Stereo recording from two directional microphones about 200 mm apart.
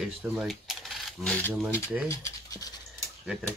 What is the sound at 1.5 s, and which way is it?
Speech, 5° right (ahead or behind).